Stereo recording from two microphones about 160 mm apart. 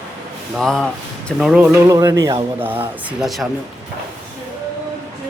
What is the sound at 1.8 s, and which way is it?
Speech, 20° right (ahead or behind).